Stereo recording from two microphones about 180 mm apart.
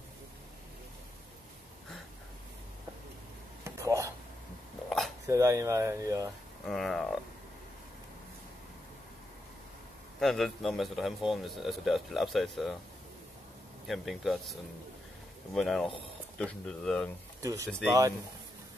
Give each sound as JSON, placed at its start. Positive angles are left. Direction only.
{"t": 3.6, "sound": "dishes", "side_deg": -15}
{"t": 4.8, "sound": "a sound", "side_deg": 0}
{"t": 5.2, "sound": "speech", "side_deg": -15}
{"t": 6.6, "sound": "a man's voice", "side_deg": 0}
{"t": 10.2, "sound": "a man's voice", "side_deg": 0}
{"t": 13.8, "sound": "a man's voice", "side_deg": 0}
{"t": 17.4, "sound": "speech", "side_deg": -20}
{"t": 17.6, "sound": "a man's voice", "side_deg": 5}